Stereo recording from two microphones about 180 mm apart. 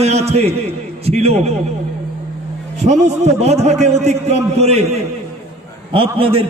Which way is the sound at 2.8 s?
40° right (ahead or behind).